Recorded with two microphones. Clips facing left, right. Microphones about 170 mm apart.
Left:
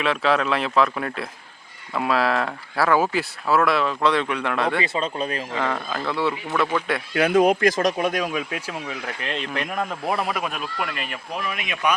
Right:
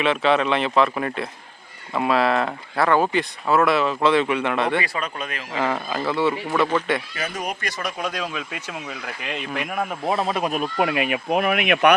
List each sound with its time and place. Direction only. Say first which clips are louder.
0.0 s speech: right 2 dB; centre (ahead or behind)
4.8 s speech: left 3 dB; 25° left (ahead or behind)
5.5 s speech: right 4 dB; 5° right (ahead or behind)
7.1 s speech: left 12 dB; 60° left (ahead or behind); by 7.9 s 90° left
8.9 s speech: left 1 dB; 5° right (ahead or behind)
10.0 s speech: right 5 dB; 25° right (ahead or behind)
10.5 s speech: right 7 dB; 50° right (ahead or behind); by 11.9 s 65° right (ahead or behind)